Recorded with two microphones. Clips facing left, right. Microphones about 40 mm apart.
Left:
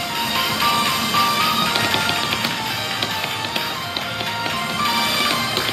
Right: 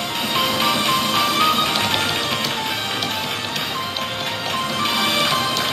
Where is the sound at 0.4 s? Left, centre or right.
Centre.